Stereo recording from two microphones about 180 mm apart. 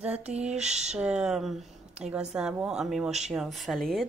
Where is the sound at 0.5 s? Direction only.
5° right (ahead or behind).